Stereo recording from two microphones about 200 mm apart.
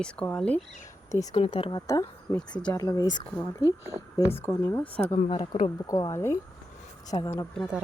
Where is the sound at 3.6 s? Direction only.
15° right (ahead or behind).